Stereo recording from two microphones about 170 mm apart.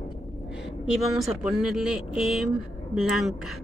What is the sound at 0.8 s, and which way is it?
Speech, centre (ahead or behind).